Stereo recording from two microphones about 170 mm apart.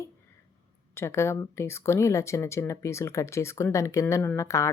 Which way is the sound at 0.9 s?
15° left (ahead or behind).